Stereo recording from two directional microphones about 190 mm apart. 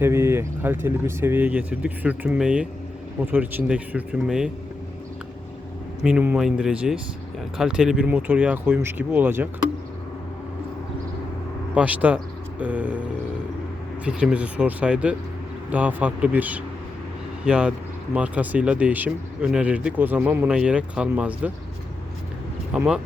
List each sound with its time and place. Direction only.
0.0 s speech: 10° right (ahead or behind)
6.0 s speech: 5° right (ahead or behind)
11.7 s speech: 5° right (ahead or behind)
14.0 s speech: 5° right (ahead or behind)
22.7 s speech: 5° right (ahead or behind)